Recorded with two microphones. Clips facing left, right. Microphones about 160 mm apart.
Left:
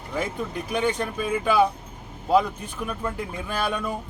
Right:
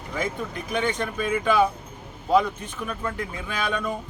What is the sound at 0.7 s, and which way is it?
Speech, 5° left (ahead or behind).